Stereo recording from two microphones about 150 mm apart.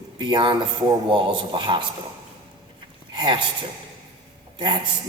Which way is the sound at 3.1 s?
30° right (ahead or behind).